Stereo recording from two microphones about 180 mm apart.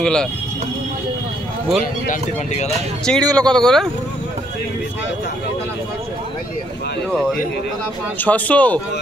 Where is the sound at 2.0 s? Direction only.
40° left (ahead or behind).